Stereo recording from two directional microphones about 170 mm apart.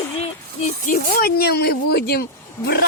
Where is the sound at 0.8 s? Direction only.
60° left (ahead or behind).